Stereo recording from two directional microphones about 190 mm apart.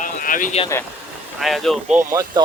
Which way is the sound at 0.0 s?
45° left (ahead or behind).